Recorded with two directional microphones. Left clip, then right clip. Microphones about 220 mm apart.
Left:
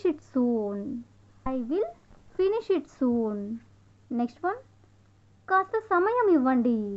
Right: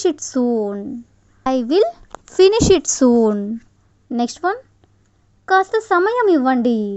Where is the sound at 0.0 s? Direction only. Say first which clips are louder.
Right 8 dB; 30° right (ahead or behind).